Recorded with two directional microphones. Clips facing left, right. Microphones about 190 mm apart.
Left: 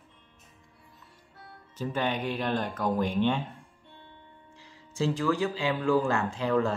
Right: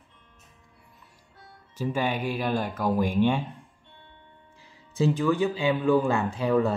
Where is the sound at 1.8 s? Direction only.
10° right (ahead or behind).